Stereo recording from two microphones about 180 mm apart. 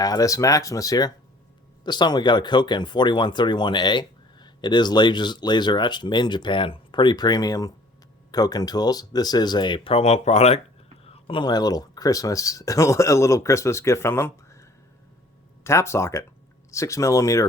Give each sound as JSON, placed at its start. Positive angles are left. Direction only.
{"t": 0.0, "sound": "speech", "side_deg": 20}